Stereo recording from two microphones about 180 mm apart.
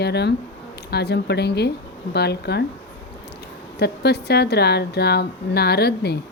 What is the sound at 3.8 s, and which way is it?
Speech, 65° left (ahead or behind).